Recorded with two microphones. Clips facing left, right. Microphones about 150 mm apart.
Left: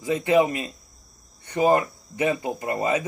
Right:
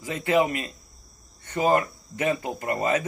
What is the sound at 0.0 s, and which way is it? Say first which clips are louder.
Speech: left 3 dB; 20° left (ahead or behind).